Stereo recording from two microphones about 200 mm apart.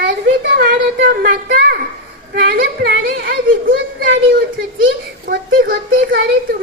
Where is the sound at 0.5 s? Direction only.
45° right (ahead or behind).